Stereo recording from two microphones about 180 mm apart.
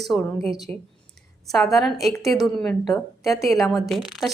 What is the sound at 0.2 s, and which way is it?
A woman's voice, 10° left (ahead or behind).